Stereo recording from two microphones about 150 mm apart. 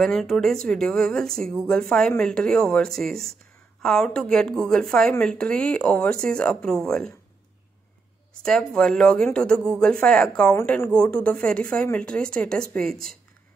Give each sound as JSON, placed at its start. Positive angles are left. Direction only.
{"t": 0.0, "sound": "speech", "side_deg": 5}
{"t": 8.4, "sound": "speech", "side_deg": 5}